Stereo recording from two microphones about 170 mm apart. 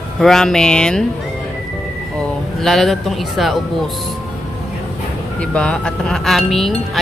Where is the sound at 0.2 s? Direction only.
Centre (ahead or behind).